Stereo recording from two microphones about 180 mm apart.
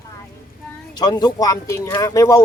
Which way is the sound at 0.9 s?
25° left (ahead or behind).